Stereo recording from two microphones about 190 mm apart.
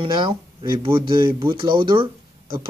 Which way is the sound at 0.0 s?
25° right (ahead or behind).